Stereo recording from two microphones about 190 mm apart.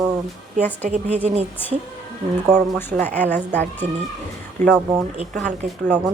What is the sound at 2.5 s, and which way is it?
Speech, 10° left (ahead or behind).